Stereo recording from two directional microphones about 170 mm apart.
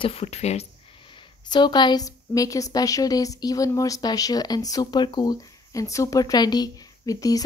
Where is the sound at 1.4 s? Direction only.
25° left (ahead or behind).